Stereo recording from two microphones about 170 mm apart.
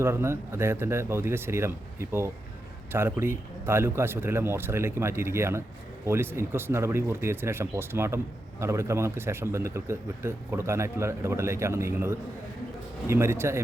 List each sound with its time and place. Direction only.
0.0 s speech: 15° right (ahead or behind)